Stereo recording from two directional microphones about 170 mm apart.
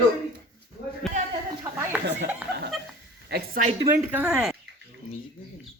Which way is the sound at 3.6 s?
45° right (ahead or behind).